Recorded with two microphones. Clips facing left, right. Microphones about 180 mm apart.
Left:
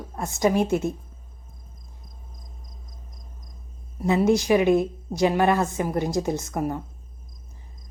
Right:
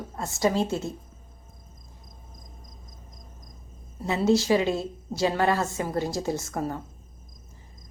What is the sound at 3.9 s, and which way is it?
A woman's voice, 15° left (ahead or behind).